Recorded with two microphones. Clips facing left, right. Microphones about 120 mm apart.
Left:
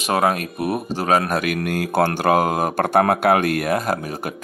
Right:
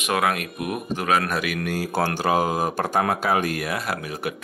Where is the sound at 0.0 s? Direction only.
35° left (ahead or behind).